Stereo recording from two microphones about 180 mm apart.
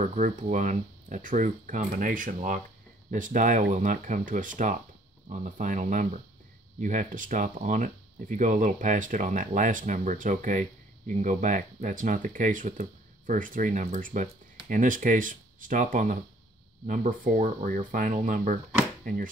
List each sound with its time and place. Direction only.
0.0 s speech: 45° right (ahead or behind)